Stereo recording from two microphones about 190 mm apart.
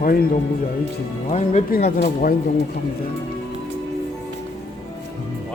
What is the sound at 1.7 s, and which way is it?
Speech, 50° left (ahead or behind).